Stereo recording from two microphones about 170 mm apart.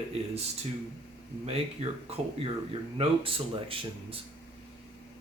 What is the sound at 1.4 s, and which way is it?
Speech, 35° right (ahead or behind).